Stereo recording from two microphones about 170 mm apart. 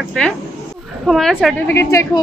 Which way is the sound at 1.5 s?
15° left (ahead or behind).